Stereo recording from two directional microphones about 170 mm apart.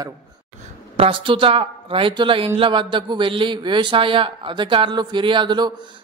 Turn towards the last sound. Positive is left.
turn(degrees=-25)  # may be behind; listen again after turning